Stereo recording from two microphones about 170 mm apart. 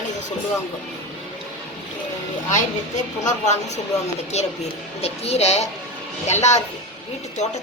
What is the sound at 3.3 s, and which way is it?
A woman's voice, 45° left (ahead or behind).